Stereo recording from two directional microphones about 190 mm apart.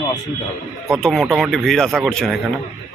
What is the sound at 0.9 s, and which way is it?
Speech, centre (ahead or behind).